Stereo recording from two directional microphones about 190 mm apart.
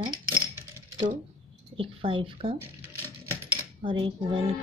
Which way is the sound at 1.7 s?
25° right (ahead or behind).